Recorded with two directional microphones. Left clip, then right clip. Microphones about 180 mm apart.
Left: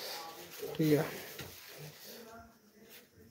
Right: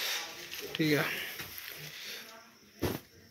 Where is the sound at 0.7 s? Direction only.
20° left (ahead or behind).